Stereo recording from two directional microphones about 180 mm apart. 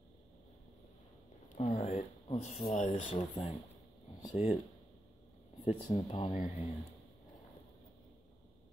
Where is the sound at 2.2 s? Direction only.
35° left (ahead or behind).